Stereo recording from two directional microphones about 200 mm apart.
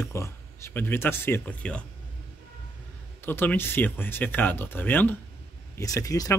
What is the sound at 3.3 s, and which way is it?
Speech, 10° left (ahead or behind).